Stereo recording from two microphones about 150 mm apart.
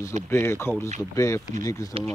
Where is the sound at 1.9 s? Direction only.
40° right (ahead or behind).